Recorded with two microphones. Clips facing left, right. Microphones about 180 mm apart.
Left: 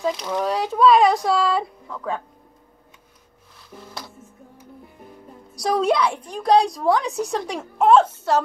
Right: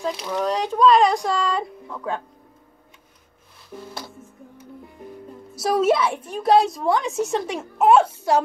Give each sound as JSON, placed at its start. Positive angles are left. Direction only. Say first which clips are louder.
{"t": 0.0, "sound": "a woman's voice", "louder": "left 1 dB", "side_deg": 0}
{"t": 5.5, "sound": "a woman's voice", "louder": "right 1 dB", "side_deg": -5}